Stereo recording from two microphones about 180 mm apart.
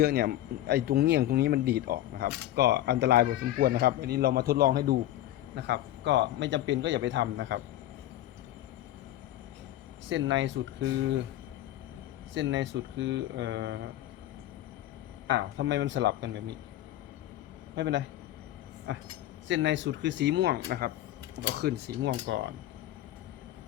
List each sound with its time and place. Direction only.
0.0 s speech: 60° right (ahead or behind)
5.5 s speech: 65° right (ahead or behind); by 7.6 s 85° right
10.1 s speech: 90° right
12.3 s speech: 90° right
15.3 s speech: 75° right (ahead or behind)
17.7 s speech: 70° right (ahead or behind)
19.5 s speech: 90° right; by 20.9 s 55° right (ahead or behind)
21.3 s speech: 65° right (ahead or behind)
22.0 s speech: 90° right